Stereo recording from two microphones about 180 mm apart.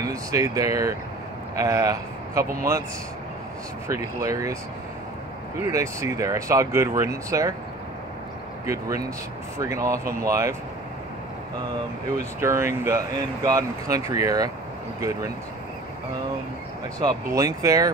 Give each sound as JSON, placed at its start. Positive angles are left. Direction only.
{"t": 0.0, "sound": "speech", "side_deg": -20}
{"t": 3.8, "sound": "speech", "side_deg": -15}
{"t": 5.6, "sound": "speech", "side_deg": -15}
{"t": 8.6, "sound": "speech", "side_deg": -20}
{"t": 12.4, "sound": "speech", "side_deg": -15}
{"t": 17.0, "sound": "speech", "side_deg": -20}